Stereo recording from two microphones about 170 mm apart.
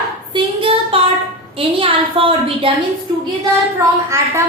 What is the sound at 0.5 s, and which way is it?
A woman's voice, 30° right (ahead or behind).